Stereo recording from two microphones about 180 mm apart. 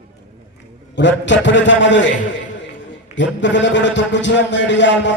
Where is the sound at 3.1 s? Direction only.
90° left.